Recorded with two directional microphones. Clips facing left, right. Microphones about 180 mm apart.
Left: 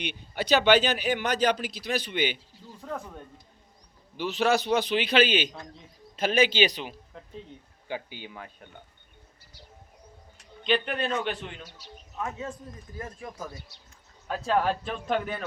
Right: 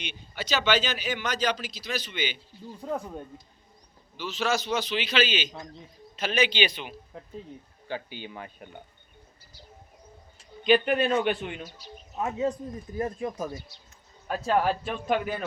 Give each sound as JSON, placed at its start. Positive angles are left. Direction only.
{"t": 0.0, "sound": "speech", "side_deg": 55}
{"t": 4.2, "sound": "speech", "side_deg": 55}
{"t": 7.9, "sound": "speech", "side_deg": 15}
{"t": 8.3, "sound": "speech", "side_deg": -5}
{"t": 10.6, "sound": "a man's voice", "side_deg": -5}
{"t": 12.1, "sound": "speech", "side_deg": -20}
{"t": 14.3, "sound": "a man's voice", "side_deg": -5}